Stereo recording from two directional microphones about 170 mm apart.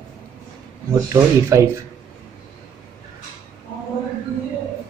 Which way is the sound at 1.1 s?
15° right (ahead or behind).